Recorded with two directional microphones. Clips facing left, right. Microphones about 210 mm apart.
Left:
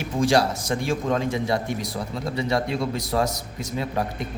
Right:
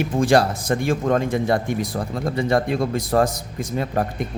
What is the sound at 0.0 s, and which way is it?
A man's voice, 55° right (ahead or behind).